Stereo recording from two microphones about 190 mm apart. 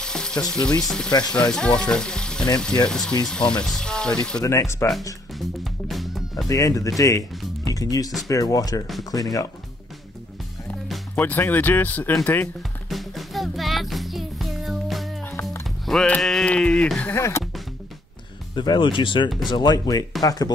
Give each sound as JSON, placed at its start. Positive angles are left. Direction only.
{"t": 0.0, "sound": "frying", "side_deg": 5}
{"t": 0.5, "sound": "speech", "side_deg": 5}
{"t": 5.6, "sound": "music", "side_deg": 0}
{"t": 6.5, "sound": "speech", "side_deg": 20}
{"t": 10.9, "sound": "speech", "side_deg": 10}
{"t": 12.9, "sound": "music", "side_deg": 0}
{"t": 15.9, "sound": "speech", "side_deg": 0}
{"t": 18.5, "sound": "speech", "side_deg": 25}